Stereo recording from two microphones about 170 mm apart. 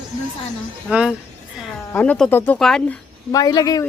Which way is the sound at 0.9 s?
5° right (ahead or behind).